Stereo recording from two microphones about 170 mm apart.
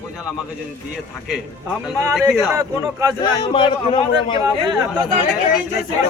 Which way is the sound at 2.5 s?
20° right (ahead or behind).